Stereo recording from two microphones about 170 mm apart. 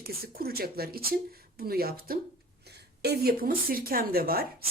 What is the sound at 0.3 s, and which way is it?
Speech, 65° right (ahead or behind).